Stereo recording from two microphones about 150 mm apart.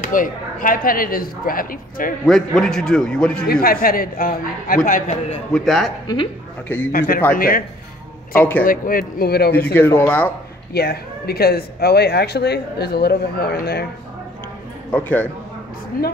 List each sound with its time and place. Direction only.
0.0 s speech: 65° left (ahead or behind)
2.2 s a man's voice: centre (ahead or behind)
3.4 s speech: 85° left; by 5.4 s 60° left (ahead or behind)
5.5 s a man's voice: centre (ahead or behind)
6.9 s a man's voice: 80° left
8.4 s speech: 10° left (ahead or behind)
8.6 s a man's voice: 70° left (ahead or behind); by 9.8 s 85° left
9.8 s speech: 15° left (ahead or behind)
10.7 s speech: 90° left
14.9 s speech: 10° left (ahead or behind)